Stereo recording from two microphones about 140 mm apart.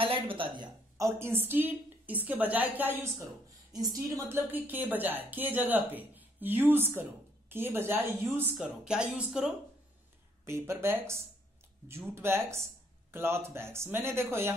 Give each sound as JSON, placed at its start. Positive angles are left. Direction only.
{"t": 0.0, "sound": "a woman's voice", "side_deg": -40}
{"t": 0.9, "sound": "speech", "side_deg": -20}
{"t": 10.4, "sound": "speech", "side_deg": -20}